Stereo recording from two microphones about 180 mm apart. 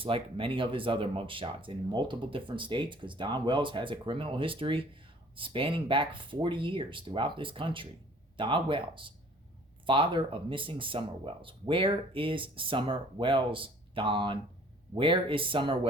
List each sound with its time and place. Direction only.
0.0 s speech: 30° right (ahead or behind)